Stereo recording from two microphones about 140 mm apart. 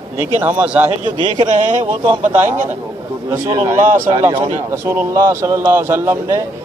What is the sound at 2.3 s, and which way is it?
Speech, 60° right (ahead or behind).